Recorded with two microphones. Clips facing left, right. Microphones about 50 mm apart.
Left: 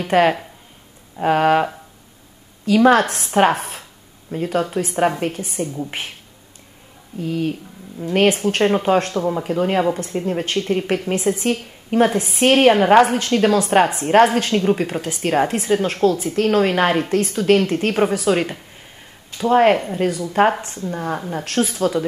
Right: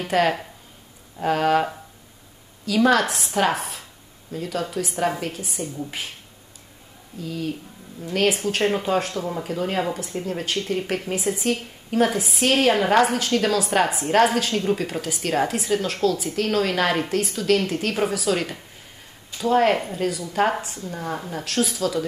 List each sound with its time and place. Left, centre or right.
0.0 s a woman's voice: left
2.6 s a woman's voice: left
7.2 s a woman's voice: left
8.3 s a woman's voice: left
8.6 s a woman's voice: left
17.2 s a woman's voice: left